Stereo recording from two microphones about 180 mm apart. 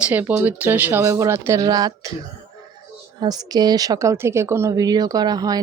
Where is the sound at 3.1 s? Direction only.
20° right (ahead or behind).